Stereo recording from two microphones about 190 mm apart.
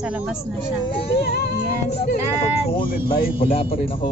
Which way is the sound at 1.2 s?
55° left (ahead or behind).